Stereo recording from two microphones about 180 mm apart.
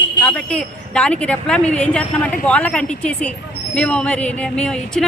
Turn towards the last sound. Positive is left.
turn(degrees=5)  # may be behind; listen again after turning